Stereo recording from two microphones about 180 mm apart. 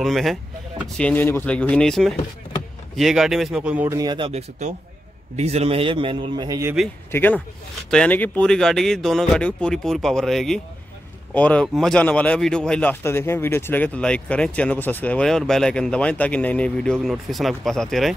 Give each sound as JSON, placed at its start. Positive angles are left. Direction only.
{"t": 0.0, "sound": "speech", "side_deg": 0}
{"t": 3.9, "sound": "a man's voice", "side_deg": -25}
{"t": 6.6, "sound": "speech", "side_deg": -5}
{"t": 7.1, "sound": "speech", "side_deg": 10}